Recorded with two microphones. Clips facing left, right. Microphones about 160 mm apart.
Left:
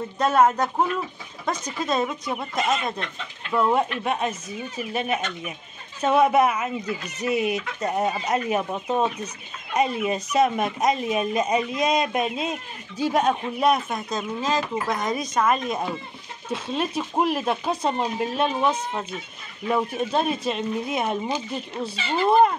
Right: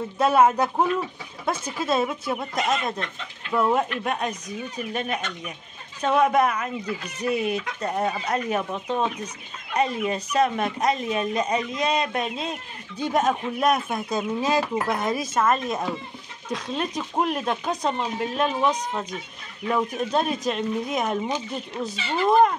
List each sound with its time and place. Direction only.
0.2 s speech: 10° right (ahead or behind)
3.5 s speech: centre (ahead or behind)
21.8 s speech: 30° left (ahead or behind)
22.2 s speech: 5° left (ahead or behind)